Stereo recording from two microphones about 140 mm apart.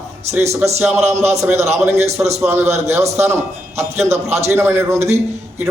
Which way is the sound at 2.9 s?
50° right (ahead or behind).